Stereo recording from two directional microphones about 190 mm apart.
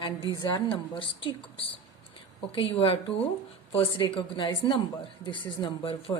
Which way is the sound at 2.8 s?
30° left (ahead or behind).